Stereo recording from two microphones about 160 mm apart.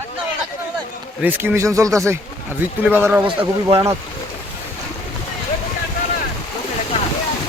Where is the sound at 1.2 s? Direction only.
10° right (ahead or behind).